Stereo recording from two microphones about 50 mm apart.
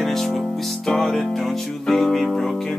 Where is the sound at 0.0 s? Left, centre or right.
Centre.